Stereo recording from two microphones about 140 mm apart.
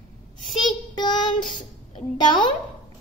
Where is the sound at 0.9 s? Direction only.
35° left (ahead or behind).